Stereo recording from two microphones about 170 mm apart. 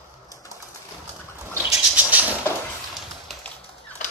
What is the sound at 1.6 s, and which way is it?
Bird, 5° right (ahead or behind).